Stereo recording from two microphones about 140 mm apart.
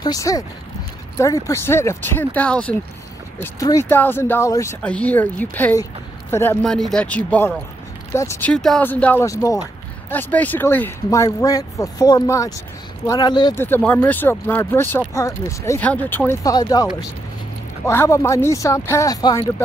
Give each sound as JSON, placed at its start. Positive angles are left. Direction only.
{"t": 0.0, "sound": "speech", "side_deg": 25}
{"t": 3.3, "sound": "speech", "side_deg": 25}
{"t": 4.8, "sound": "speech", "side_deg": 10}
{"t": 6.6, "sound": "speech", "side_deg": 5}
{"t": 8.5, "sound": "speech", "side_deg": 5}
{"t": 9.2, "sound": "speech", "side_deg": 25}
{"t": 10.1, "sound": "speech", "side_deg": 10}
{"t": 11.1, "sound": "speech", "side_deg": 25}
{"t": 13.6, "sound": "speech", "side_deg": 15}
{"t": 15.9, "sound": "speech", "side_deg": 10}
{"t": 16.5, "sound": "speech", "side_deg": 25}
{"t": 17.8, "sound": "speech", "side_deg": 20}